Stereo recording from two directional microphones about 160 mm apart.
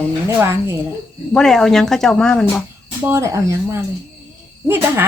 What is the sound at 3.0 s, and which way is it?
Speech, 15° right (ahead or behind).